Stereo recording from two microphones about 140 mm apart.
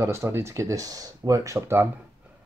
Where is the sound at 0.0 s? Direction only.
20° right (ahead or behind).